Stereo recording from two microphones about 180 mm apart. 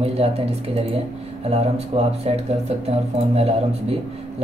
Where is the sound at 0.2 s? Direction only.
35° right (ahead or behind).